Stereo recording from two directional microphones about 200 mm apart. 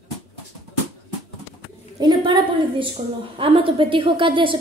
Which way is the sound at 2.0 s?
20° right (ahead or behind).